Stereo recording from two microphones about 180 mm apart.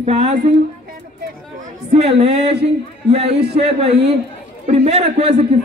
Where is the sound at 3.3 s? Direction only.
65° right (ahead or behind).